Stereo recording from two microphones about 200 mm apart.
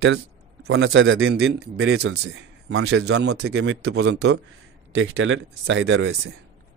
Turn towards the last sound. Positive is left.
turn(degrees=-70)  # may be behind; listen again after turning